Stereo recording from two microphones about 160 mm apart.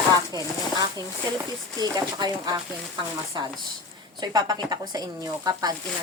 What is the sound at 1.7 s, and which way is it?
Speech, 25° right (ahead or behind).